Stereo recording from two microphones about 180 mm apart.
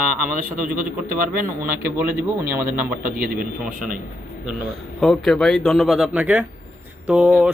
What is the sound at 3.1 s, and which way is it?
Speech, 50° right (ahead or behind).